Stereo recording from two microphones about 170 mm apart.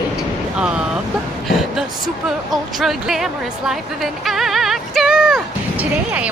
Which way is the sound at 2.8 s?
Centre (ahead or behind).